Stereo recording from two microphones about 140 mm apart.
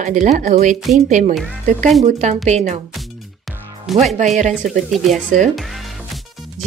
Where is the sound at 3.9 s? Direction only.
Centre (ahead or behind).